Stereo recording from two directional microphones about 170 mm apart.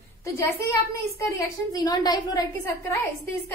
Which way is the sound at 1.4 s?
20° left (ahead or behind).